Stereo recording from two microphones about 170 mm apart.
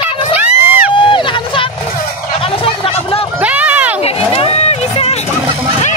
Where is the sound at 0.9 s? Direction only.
30° left (ahead or behind).